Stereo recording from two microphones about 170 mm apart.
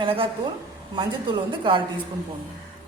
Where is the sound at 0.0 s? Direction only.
30° right (ahead or behind).